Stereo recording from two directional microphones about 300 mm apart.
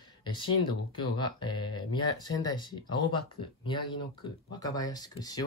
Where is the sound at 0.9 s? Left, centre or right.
Centre.